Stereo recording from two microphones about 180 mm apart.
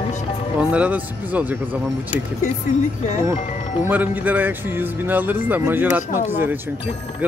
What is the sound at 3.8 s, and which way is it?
Speech, 10° right (ahead or behind).